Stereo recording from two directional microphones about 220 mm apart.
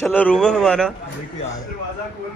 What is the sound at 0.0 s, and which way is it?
Speech, 5° left (ahead or behind).